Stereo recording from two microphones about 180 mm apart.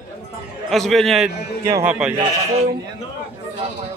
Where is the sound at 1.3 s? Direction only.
70° left (ahead or behind).